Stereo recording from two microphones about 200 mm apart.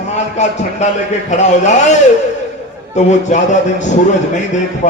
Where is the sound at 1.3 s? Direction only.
35° left (ahead or behind).